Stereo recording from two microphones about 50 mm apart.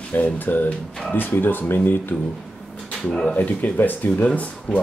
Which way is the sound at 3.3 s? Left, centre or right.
Left.